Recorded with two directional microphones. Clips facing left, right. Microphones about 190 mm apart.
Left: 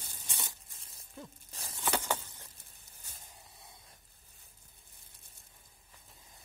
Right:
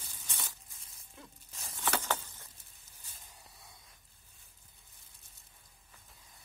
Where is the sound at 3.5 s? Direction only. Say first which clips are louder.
Left 1 dB; 25° left (ahead or behind).